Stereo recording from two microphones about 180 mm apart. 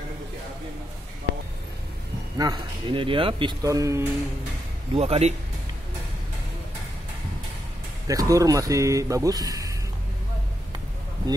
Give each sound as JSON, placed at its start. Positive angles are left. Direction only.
{"t": 2.3, "sound": "speech", "side_deg": -20}
{"t": 4.9, "sound": "speech", "side_deg": -35}
{"t": 8.1, "sound": "speech", "side_deg": -20}